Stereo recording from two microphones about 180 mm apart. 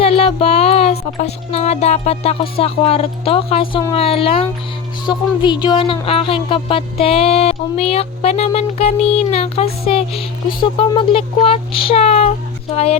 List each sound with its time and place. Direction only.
0.0 s speech: 35° left (ahead or behind)